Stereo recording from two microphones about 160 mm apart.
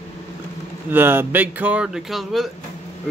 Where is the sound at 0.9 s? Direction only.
15° right (ahead or behind).